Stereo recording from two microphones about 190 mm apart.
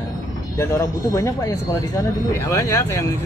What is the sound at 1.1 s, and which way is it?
Speech, 15° left (ahead or behind).